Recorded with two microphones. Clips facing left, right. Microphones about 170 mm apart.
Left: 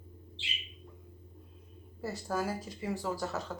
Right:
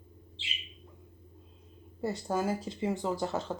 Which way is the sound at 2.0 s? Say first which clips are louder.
Right 3 dB; 25° right (ahead or behind).